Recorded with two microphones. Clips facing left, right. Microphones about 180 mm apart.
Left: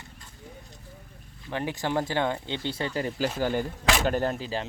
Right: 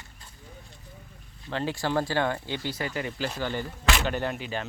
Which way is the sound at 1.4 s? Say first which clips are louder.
Right 1 dB; 15° left (ahead or behind).